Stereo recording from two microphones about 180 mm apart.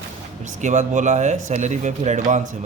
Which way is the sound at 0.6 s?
40° right (ahead or behind).